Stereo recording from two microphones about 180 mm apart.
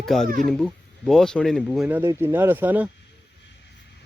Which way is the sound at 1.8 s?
10° right (ahead or behind).